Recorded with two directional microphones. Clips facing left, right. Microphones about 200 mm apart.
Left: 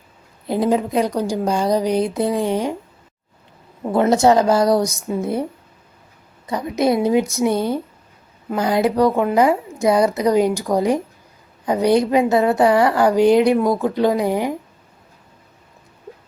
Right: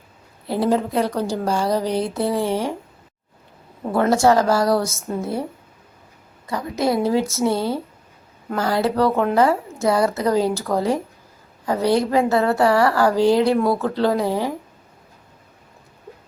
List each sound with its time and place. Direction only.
0.4 s a woman's voice: 15° left (ahead or behind)
3.9 s a woman's voice: 20° left (ahead or behind)